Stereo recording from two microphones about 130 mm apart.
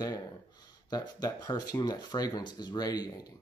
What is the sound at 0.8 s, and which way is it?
Speech, 30° left (ahead or behind).